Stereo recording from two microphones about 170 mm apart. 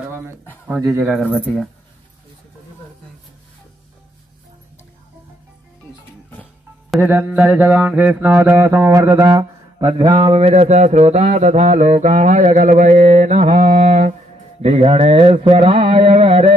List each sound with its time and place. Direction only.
0.7 s mantra: 15° right (ahead or behind)
7.0 s mantra: 10° right (ahead or behind); by 16.5 s 35° right (ahead or behind)